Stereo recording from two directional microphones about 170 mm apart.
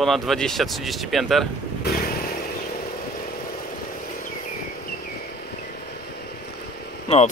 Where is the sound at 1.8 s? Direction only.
65° left (ahead or behind).